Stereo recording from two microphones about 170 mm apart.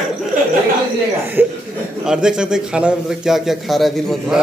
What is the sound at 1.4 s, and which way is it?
A man's voice, 10° right (ahead or behind).